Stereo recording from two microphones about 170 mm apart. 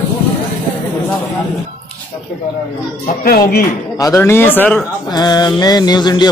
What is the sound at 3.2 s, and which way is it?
Speech, 65° left (ahead or behind).